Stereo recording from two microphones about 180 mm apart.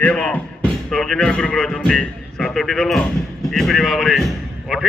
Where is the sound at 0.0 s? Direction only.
5° left (ahead or behind).